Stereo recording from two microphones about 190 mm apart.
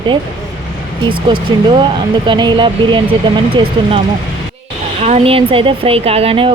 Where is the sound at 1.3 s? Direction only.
25° right (ahead or behind).